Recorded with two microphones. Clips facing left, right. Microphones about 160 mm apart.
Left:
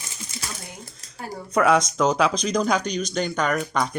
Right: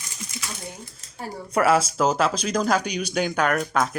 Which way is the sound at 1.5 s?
5° right (ahead or behind).